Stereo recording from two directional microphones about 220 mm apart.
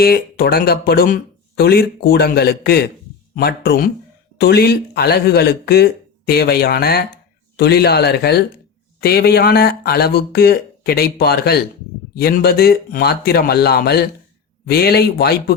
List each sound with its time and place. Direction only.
0.0 s speech: 45° left (ahead or behind)